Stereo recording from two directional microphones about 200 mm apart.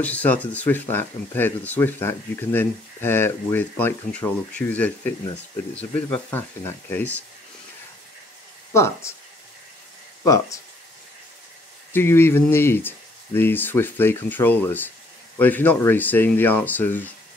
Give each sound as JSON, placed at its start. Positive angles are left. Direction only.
{"t": 0.0, "sound": "speech", "side_deg": 10}
{"t": 8.7, "sound": "speech", "side_deg": 15}
{"t": 10.2, "sound": "speech", "side_deg": 15}
{"t": 11.9, "sound": "speech", "side_deg": 10}